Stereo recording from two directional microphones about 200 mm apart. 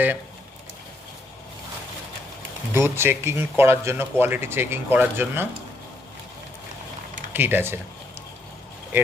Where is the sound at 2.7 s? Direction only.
10° right (ahead or behind).